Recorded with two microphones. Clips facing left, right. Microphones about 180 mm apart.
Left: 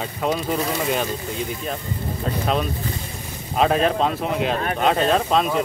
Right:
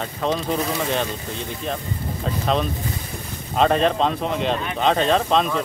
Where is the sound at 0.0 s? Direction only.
10° left (ahead or behind).